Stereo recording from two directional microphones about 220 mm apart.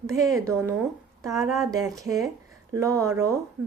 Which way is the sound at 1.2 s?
15° right (ahead or behind).